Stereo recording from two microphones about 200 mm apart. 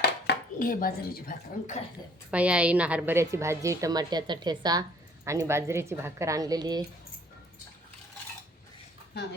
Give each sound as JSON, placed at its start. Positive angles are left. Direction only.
{"t": 0.0, "sound": "speech", "side_deg": 50}
{"t": 2.3, "sound": "a woman's voice", "side_deg": -5}